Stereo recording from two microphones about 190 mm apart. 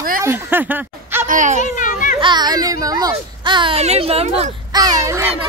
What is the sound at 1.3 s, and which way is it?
Speech, 40° right (ahead or behind).